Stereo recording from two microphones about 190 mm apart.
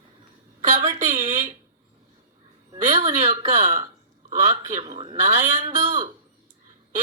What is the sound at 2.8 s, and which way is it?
A man's voice, 35° right (ahead or behind).